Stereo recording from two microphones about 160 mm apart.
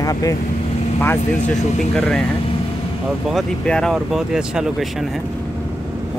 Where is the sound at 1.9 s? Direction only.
Centre (ahead or behind).